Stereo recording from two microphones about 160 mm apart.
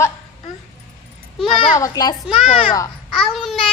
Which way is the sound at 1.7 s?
20° left (ahead or behind).